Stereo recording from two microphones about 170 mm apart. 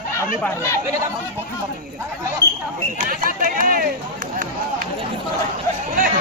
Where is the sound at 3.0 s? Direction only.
55° right (ahead or behind).